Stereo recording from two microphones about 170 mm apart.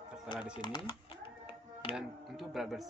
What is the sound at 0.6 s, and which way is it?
Typing, 30° left (ahead or behind).